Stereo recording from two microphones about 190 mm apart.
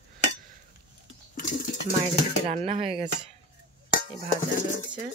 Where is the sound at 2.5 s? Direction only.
30° right (ahead or behind).